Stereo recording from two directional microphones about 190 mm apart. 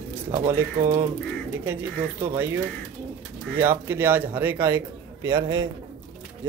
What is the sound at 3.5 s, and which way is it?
A man's voice, 10° right (ahead or behind).